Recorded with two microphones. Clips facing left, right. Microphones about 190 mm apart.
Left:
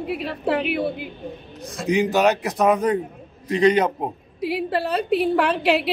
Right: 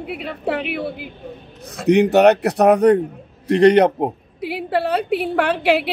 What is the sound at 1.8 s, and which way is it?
A man's voice, 65° right (ahead or behind).